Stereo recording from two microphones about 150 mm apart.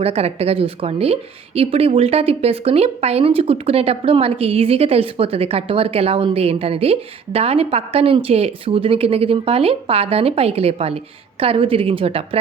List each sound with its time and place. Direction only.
0.0 s a woman's voice: 40° right (ahead or behind)